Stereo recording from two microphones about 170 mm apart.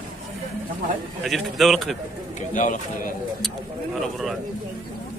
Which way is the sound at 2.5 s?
50° left (ahead or behind).